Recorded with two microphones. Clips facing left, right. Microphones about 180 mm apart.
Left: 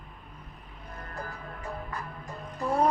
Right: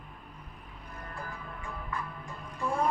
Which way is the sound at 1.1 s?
40° left (ahead or behind).